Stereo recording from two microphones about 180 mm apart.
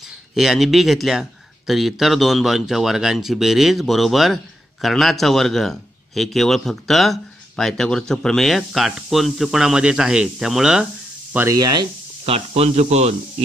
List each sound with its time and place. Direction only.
0.3 s a man's voice: centre (ahead or behind)
11.3 s speech: 20° right (ahead or behind)
12.4 s speech: 35° right (ahead or behind)